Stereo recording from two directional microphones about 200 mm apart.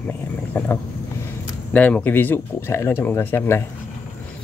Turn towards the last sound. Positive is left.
turn(degrees=10)  # may be behind; listen again after turning